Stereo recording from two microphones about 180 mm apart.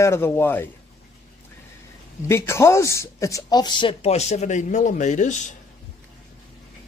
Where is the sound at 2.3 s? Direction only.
15° left (ahead or behind); by 5.5 s 45° left (ahead or behind).